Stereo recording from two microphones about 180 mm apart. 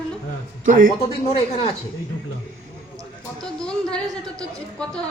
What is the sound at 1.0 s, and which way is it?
Speech, 35° left (ahead or behind).